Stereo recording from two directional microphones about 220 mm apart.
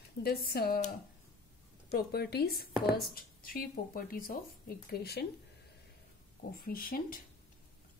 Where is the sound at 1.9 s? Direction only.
45° left (ahead or behind).